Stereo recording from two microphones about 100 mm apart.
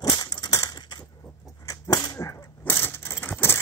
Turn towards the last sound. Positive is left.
turn(degrees=20)  # may be behind; listen again after turning